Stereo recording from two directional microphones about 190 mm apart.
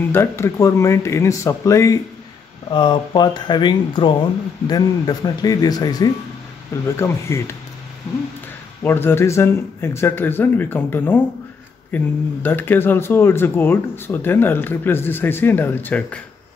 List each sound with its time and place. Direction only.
0.1 s speech: 15° left (ahead or behind)
8.8 s speech: 10° left (ahead or behind)